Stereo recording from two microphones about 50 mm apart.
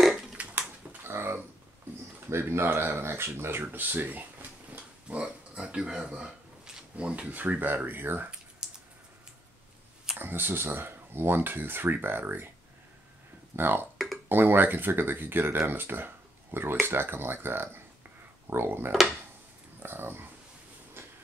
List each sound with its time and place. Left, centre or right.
0.4 s a sound: right
1.0 s a sound: right
2.2 s speech: right
5.1 s speech: right
7.0 s speech: right
8.6 s typing: centre
10.1 s speech: right
13.6 s speech: right
18.9 s speech: centre
19.8 s speech: right